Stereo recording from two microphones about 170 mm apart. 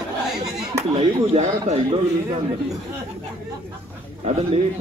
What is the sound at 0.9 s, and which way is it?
A man's voice, 35° right (ahead or behind).